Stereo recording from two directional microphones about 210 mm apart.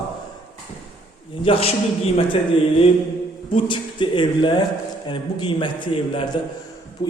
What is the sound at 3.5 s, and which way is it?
A man's voice, 25° left (ahead or behind).